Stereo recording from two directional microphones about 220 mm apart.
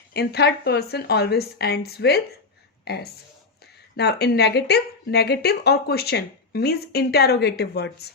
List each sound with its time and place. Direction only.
0.1 s speech: 50° left (ahead or behind)